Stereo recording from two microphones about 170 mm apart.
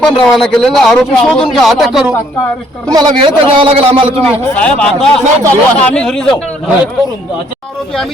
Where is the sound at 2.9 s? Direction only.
25° right (ahead or behind).